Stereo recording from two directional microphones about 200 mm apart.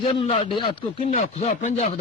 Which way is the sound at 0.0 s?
30° left (ahead or behind).